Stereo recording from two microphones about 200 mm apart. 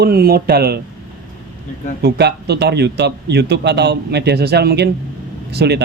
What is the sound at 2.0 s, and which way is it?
A man's voice, 55° right (ahead or behind).